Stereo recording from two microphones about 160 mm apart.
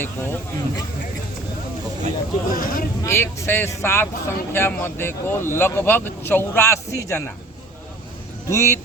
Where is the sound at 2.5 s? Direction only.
60° left (ahead or behind).